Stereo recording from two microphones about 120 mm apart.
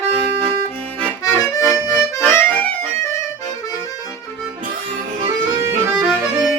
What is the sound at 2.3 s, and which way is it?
Music, 15° left (ahead or behind).